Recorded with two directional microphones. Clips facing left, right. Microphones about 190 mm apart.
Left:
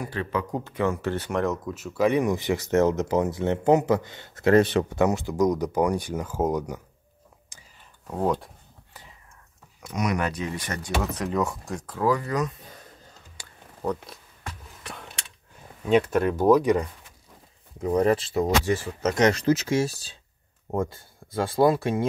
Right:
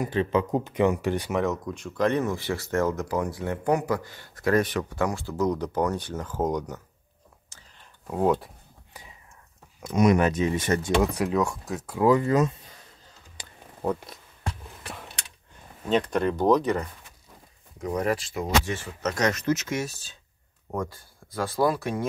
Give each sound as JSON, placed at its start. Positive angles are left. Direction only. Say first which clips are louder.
{"t": 0.0, "sound": "speech", "louder": "right 5 dB", "side_deg": -20}
{"t": 1.3, "sound": "speech", "louder": "even", "side_deg": 0}
{"t": 7.5, "sound": "whispering", "louder": "even", "side_deg": 15}
{"t": 8.1, "sound": "speech", "louder": "right 2 dB", "side_deg": -5}
{"t": 9.8, "sound": "speech", "louder": "right 6 dB", "side_deg": -25}
{"t": 11.1, "sound": "speech", "louder": "right 2 dB", "side_deg": 0}
{"t": 12.1, "sound": "speech", "louder": "right 5 dB", "side_deg": -25}
{"t": 13.4, "sound": "a sound", "louder": "right 3 dB", "side_deg": -20}
{"t": 13.8, "sound": "speech", "louder": "right 1 dB", "side_deg": -5}
{"t": 15.9, "sound": "speech", "louder": "left 3 dB", "side_deg": 10}
{"t": 17.7, "sound": "speech", "louder": "left 5 dB", "side_deg": 30}